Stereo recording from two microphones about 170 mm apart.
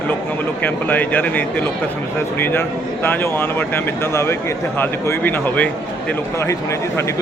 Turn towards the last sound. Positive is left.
turn(degrees=10)  # may be behind; listen again after turning